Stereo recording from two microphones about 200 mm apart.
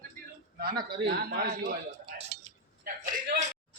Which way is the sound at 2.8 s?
40° right (ahead or behind).